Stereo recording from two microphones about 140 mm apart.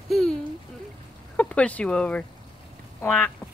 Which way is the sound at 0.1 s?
5° left (ahead or behind).